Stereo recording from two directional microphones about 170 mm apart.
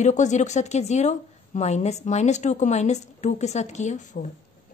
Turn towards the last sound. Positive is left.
turn(degrees=45)  # may be behind; listen again after turning